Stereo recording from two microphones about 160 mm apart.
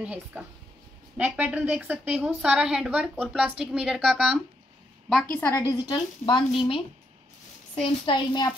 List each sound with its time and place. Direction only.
0.0 s a woman's voice: 10° right (ahead or behind)
5.2 s a woman's voice: 15° left (ahead or behind)